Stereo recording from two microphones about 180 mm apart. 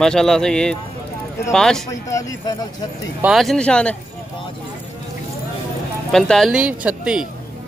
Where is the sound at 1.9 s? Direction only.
20° left (ahead or behind).